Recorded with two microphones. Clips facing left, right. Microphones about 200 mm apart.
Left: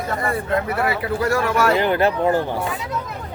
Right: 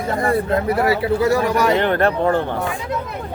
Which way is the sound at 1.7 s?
5° left (ahead or behind).